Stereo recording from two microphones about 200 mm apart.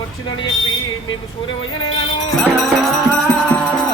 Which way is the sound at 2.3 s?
Centre (ahead or behind).